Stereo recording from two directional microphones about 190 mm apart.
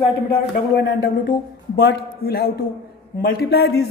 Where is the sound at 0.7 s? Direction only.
60° left (ahead or behind).